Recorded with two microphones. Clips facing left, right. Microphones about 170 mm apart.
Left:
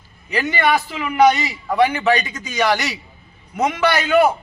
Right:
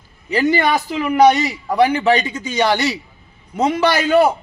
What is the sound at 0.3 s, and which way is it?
A man's voice, 30° right (ahead or behind).